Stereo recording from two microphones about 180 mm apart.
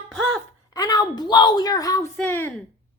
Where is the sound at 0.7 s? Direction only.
20° left (ahead or behind).